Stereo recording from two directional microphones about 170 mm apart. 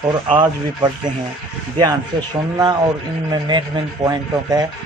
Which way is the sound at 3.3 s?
25° right (ahead or behind).